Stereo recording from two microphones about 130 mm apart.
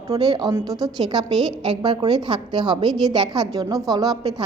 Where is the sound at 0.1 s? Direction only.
30° right (ahead or behind).